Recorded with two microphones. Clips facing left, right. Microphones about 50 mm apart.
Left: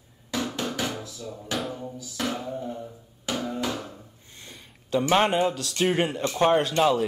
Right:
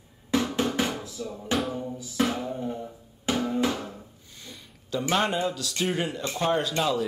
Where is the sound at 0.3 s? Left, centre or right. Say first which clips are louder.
Right 4 dB; right.